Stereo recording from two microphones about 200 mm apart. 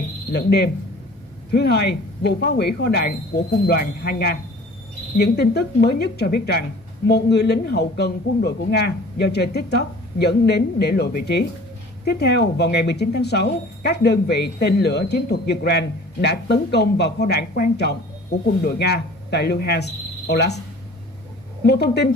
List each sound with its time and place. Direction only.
0.3 s speech: 55° left (ahead or behind)
21.6 s speech: 55° left (ahead or behind)